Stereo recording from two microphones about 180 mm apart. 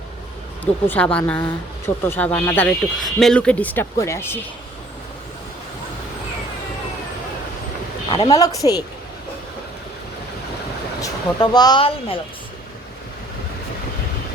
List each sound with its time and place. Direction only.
0.6 s speech: 10° left (ahead or behind)
8.1 s a woman's voice: 20° left (ahead or behind)
11.0 s speech: 20° left (ahead or behind)